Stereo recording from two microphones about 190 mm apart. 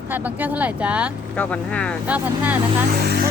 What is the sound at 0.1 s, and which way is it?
Speech, 10° right (ahead or behind).